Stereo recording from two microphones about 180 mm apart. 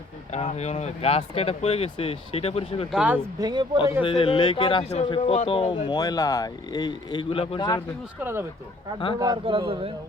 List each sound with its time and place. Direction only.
0.3 s speech: 35° left (ahead or behind)
2.9 s speech: 5° right (ahead or behind)
3.4 s a man's voice: 25° right (ahead or behind)
4.0 s speech: 30° left (ahead or behind)
8.2 s a man's voice: 15° right (ahead or behind); by 9.9 s 30° right (ahead or behind)